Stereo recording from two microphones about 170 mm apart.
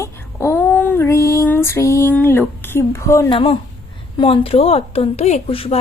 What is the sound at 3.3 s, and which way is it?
Speech, 30° left (ahead or behind).